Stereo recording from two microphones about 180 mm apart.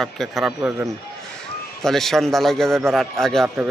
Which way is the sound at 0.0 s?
Centre (ahead or behind).